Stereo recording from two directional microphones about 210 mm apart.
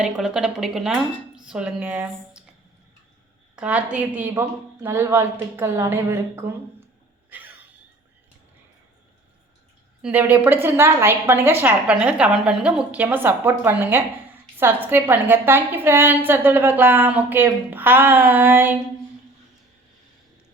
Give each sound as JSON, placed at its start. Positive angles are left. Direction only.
{"t": 0.0, "sound": "speech", "side_deg": -5}
{"t": 3.5, "sound": "a woman's voice", "side_deg": -5}
{"t": 7.3, "sound": "a sound", "side_deg": -10}
{"t": 10.0, "sound": "a woman's voice", "side_deg": -10}